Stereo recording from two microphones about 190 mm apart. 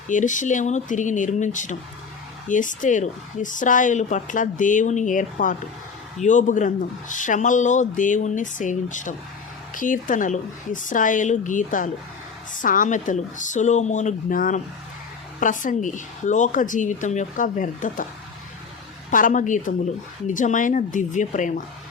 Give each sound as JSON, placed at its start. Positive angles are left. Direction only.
{"t": 0.1, "sound": "speech", "side_deg": 40}
{"t": 19.1, "sound": "speech", "side_deg": 45}